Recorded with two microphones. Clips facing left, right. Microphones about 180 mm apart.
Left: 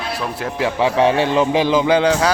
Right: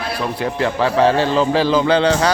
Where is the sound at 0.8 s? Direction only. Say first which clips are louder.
Even; 15° left (ahead or behind).